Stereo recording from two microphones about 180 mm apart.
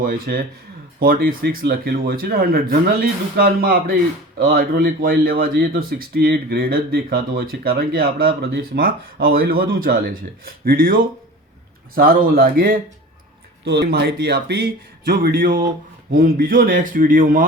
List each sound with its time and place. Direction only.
0.0 s a man's voice: 50° right (ahead or behind)
13.7 s a man's voice: 70° right (ahead or behind); by 17.4 s 50° right (ahead or behind)